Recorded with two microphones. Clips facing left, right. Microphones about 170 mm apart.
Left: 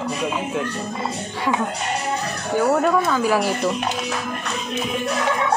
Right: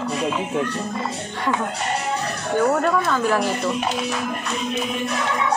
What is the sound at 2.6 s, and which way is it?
Speech, 5° left (ahead or behind).